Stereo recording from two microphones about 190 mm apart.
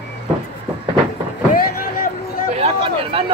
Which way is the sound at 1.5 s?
50° left (ahead or behind).